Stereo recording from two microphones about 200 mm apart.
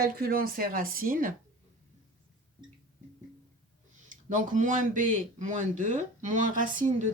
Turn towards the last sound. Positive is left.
turn(degrees=-40)  # may be behind; listen again after turning